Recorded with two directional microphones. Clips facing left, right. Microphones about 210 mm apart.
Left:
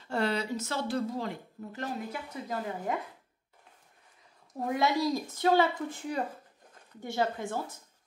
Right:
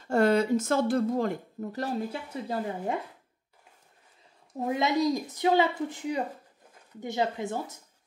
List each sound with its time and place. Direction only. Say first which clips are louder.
0.0 s speech: right 8 dB; 45° right (ahead or behind); by 3.0 s 30° right (ahead or behind)
4.6 s a woman's voice: right 2 dB; 20° right (ahead or behind)